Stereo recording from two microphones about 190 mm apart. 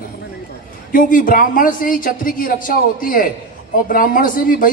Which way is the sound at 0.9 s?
45° left (ahead or behind).